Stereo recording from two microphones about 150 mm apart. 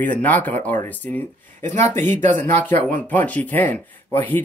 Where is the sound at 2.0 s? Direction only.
55° right (ahead or behind).